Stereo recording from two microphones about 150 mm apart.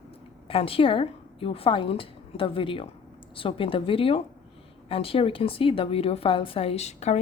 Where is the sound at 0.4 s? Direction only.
40° left (ahead or behind).